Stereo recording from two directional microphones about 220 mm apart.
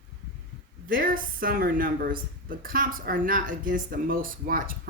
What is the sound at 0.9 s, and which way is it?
A woman's voice, 40° right (ahead or behind).